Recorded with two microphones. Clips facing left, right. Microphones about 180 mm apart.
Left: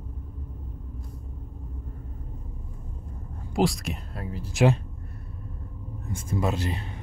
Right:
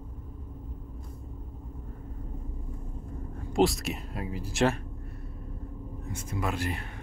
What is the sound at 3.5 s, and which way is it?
Speech, centre (ahead or behind).